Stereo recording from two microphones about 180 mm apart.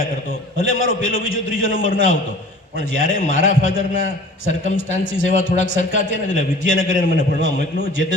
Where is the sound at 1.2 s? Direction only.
90° left.